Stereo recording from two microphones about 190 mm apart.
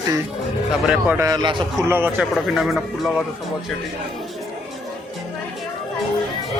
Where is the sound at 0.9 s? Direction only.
10° right (ahead or behind).